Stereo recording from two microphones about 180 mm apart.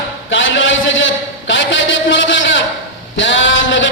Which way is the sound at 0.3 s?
90° left.